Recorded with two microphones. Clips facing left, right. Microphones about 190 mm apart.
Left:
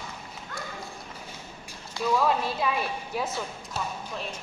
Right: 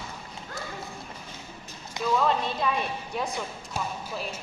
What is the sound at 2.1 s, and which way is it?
A woman's voice, 5° left (ahead or behind).